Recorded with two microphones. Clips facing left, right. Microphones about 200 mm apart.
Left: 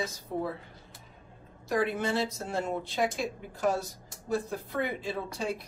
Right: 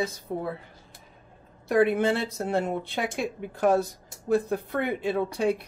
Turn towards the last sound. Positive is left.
turn(degrees=-60)  # may be behind; listen again after turning